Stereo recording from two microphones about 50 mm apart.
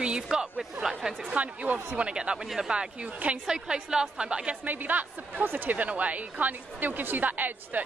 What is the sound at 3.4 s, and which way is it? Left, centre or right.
A woman's voice, centre.